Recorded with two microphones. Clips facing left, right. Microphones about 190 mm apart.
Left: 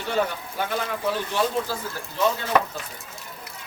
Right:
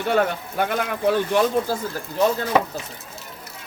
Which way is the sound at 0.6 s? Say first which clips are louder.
Right 4 dB; 60° right (ahead or behind).